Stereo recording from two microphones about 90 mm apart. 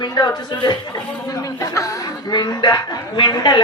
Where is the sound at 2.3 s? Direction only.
50° left (ahead or behind).